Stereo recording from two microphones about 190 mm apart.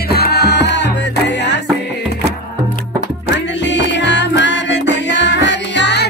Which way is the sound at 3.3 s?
70° left (ahead or behind).